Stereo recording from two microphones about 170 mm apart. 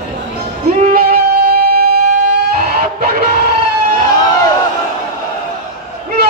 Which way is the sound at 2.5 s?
60° right (ahead or behind).